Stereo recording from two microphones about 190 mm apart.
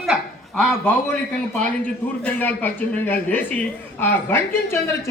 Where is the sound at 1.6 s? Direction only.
5° left (ahead or behind).